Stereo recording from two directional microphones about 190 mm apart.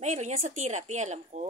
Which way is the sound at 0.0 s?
40° right (ahead or behind).